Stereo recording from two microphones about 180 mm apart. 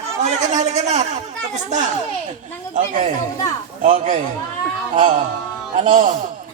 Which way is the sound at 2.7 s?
45° right (ahead or behind).